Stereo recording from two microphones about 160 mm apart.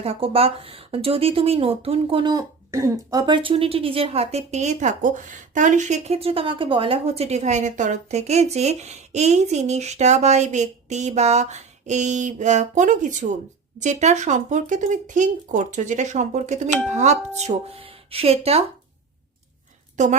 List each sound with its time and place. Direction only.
0.0 s speech: 40° right (ahead or behind)
20.0 s speech: 50° right (ahead or behind)